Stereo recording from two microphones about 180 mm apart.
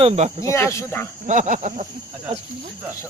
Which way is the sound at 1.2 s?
45° right (ahead or behind).